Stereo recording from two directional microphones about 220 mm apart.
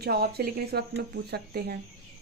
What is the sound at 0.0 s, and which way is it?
Speech, 45° right (ahead or behind).